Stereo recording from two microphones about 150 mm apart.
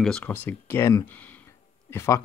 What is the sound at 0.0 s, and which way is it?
Speech, 10° left (ahead or behind).